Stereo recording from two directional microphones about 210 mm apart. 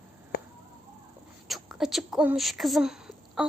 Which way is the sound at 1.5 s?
Centre (ahead or behind).